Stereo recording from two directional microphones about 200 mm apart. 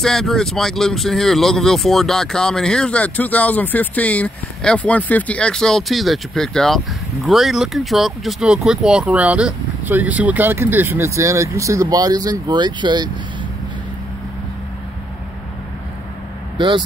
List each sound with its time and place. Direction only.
0.0 s speech: centre (ahead or behind); by 13.1 s 20° right (ahead or behind)
16.5 s speech: 25° right (ahead or behind)